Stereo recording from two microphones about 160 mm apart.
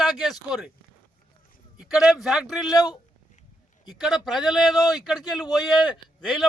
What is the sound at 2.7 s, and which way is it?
Speech, 25° left (ahead or behind).